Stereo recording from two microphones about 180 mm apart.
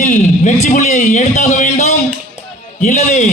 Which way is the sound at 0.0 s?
40° left (ahead or behind).